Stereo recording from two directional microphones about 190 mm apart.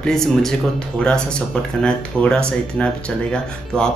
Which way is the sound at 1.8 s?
5° left (ahead or behind).